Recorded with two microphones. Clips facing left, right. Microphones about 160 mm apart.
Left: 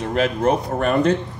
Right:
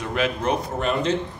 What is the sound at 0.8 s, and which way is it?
Speech, 50° left (ahead or behind).